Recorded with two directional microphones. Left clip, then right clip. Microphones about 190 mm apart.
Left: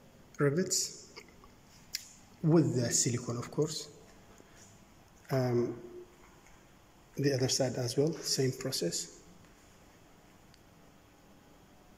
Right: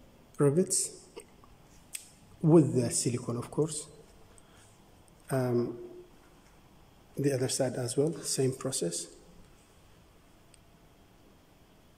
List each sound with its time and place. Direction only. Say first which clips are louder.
0.4 s speech: right 3 dB; 15° right (ahead or behind)
1.9 s scissors: left 5 dB; 10° right (ahead or behind)
2.4 s speech: right 5 dB; 10° right (ahead or behind)
5.3 s speech: right 1 dB; 5° right (ahead or behind)
7.2 s speech: right 1 dB; 10° right (ahead or behind)